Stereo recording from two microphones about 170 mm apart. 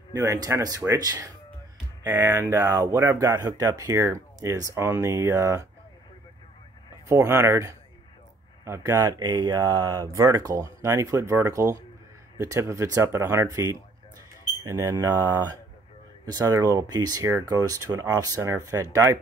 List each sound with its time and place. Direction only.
0.1 s speech: 20° right (ahead or behind)
7.1 s speech: 15° right (ahead or behind)
16.3 s speech: 20° right (ahead or behind)